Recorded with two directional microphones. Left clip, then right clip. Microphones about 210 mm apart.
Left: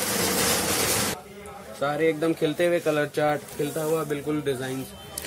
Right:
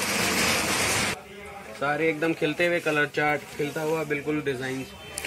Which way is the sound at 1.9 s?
25° left (ahead or behind).